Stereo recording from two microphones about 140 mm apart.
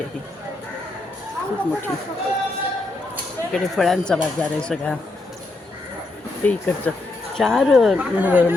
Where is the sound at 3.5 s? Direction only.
Centre (ahead or behind).